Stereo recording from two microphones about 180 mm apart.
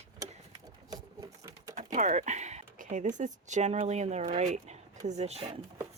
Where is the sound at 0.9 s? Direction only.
20° right (ahead or behind).